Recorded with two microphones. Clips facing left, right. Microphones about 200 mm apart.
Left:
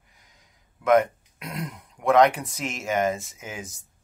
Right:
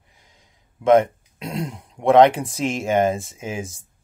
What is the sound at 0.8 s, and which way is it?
Speech, 30° right (ahead or behind).